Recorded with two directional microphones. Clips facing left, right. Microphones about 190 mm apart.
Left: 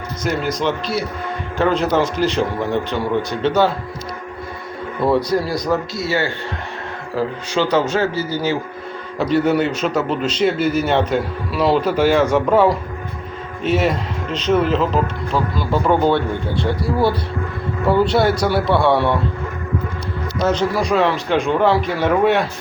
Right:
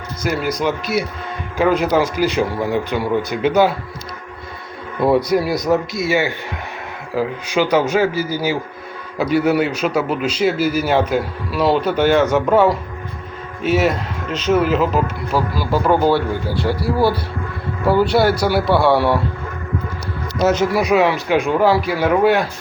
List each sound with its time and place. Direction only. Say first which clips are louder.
0.3 s a man's voice: right 1 dB; 10° right (ahead or behind)
5.0 s a man's voice: right 2 dB; 10° right (ahead or behind)
20.4 s a man's voice: right 2 dB; 10° right (ahead or behind)